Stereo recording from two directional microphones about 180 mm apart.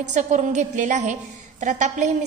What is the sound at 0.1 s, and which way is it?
A woman's voice, 40° right (ahead or behind).